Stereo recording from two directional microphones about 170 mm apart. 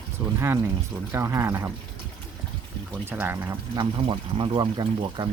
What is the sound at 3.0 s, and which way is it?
Speech, 10° right (ahead or behind).